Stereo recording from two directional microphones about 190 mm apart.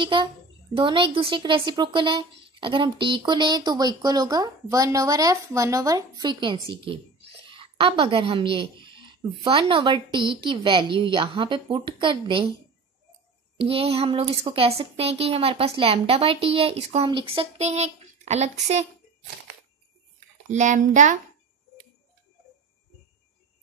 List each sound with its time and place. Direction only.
0.0 s speech: 25° right (ahead or behind)
13.6 s speech: 30° right (ahead or behind)
20.5 s speech: 40° right (ahead or behind)